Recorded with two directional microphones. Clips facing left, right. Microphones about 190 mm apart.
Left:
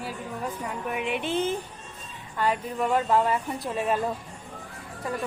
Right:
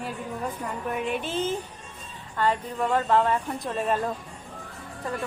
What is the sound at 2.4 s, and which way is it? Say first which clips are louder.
A woman's voice: right 1 dB; 10° left (ahead or behind).